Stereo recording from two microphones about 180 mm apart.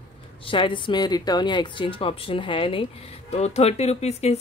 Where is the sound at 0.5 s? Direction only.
30° left (ahead or behind).